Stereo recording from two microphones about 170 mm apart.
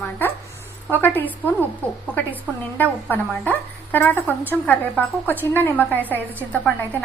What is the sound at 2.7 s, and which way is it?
A woman's voice, 10° left (ahead or behind).